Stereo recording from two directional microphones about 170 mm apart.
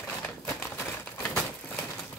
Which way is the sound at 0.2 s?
15° left (ahead or behind).